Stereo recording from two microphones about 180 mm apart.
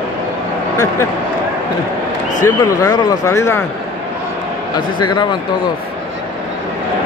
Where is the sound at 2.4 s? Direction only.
20° left (ahead or behind).